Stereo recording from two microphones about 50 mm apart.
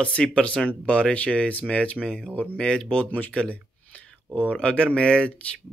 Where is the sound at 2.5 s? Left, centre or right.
Centre.